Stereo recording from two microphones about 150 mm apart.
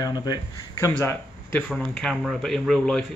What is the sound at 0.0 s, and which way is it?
Speech, 25° left (ahead or behind).